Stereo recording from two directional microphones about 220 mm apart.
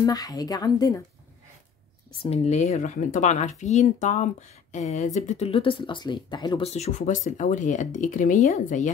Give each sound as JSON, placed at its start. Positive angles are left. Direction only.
{"t": 0.0, "sound": "a woman's voice", "side_deg": 15}
{"t": 2.2, "sound": "speech", "side_deg": 30}